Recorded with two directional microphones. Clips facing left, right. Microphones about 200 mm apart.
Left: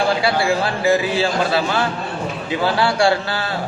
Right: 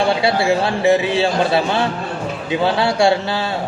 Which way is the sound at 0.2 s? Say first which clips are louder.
Right 2 dB; 25° right (ahead or behind).